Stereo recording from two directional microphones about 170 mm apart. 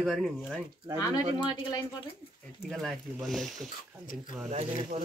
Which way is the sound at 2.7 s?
Centre (ahead or behind).